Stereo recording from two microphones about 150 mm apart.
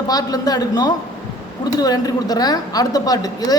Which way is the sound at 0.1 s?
25° left (ahead or behind).